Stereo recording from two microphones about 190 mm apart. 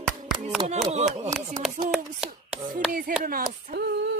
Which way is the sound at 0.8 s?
35° right (ahead or behind).